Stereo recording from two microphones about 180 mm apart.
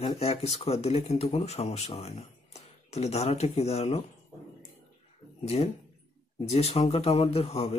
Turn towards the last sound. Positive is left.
turn(degrees=35)  # may be behind; listen again after turning